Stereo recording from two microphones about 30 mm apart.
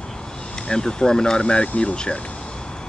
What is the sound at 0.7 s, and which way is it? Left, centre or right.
Speech, left.